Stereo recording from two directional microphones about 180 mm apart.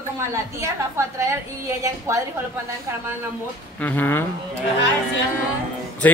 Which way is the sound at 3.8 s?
10° left (ahead or behind).